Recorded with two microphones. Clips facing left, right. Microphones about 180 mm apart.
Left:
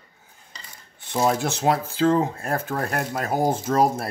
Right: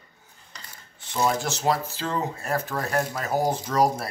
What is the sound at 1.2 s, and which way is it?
Speech, 55° left (ahead or behind).